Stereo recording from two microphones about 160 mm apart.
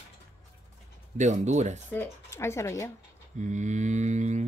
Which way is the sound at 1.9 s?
15° left (ahead or behind).